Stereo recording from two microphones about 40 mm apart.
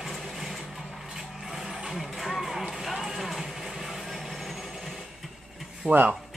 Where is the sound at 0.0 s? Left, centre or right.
Centre.